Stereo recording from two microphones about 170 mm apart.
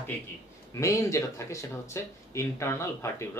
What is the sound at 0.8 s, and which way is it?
Speech, 20° left (ahead or behind).